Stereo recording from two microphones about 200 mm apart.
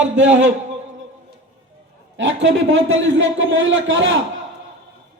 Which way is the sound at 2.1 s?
70° right (ahead or behind).